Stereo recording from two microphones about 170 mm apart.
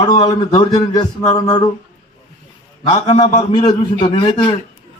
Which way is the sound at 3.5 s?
25° left (ahead or behind).